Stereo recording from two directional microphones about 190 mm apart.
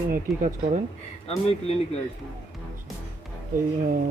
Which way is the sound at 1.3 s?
35° left (ahead or behind).